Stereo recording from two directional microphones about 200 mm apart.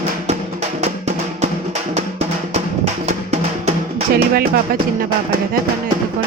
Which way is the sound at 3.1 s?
30° right (ahead or behind).